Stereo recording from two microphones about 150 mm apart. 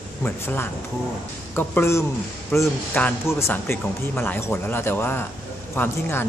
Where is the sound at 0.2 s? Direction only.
10° left (ahead or behind).